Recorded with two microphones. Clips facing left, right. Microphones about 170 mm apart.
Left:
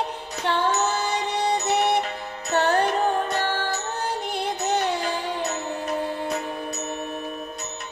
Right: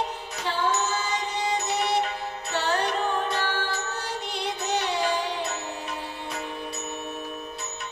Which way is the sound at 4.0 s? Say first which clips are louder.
Left 4 dB; 50° left (ahead or behind).